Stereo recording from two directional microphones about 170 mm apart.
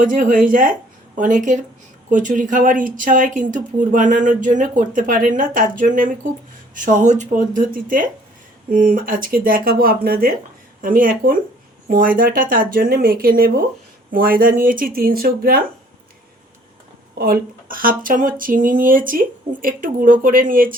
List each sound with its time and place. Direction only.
0.0 s speech: 50° right (ahead or behind)
17.2 s speech: 60° right (ahead or behind)